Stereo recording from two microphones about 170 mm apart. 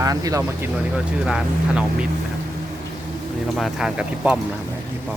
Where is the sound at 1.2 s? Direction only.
5° right (ahead or behind).